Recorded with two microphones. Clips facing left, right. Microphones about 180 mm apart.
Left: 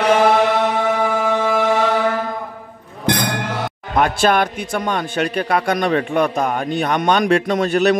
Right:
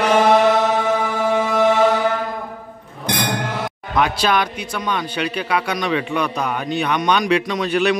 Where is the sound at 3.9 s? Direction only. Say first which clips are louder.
Left 3 dB; 50° left (ahead or behind).